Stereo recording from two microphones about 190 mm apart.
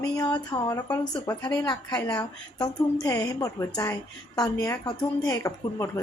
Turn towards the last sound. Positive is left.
turn(degrees=15)  # may be behind; listen again after turning